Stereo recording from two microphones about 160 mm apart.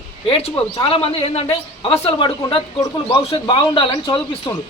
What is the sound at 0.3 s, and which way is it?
A woman's voice, 35° left (ahead or behind).